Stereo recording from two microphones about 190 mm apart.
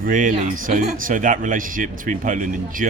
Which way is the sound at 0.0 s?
45° right (ahead or behind).